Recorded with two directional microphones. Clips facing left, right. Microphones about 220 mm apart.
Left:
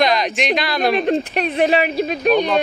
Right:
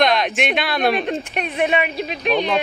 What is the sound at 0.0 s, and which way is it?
Speech, centre (ahead or behind).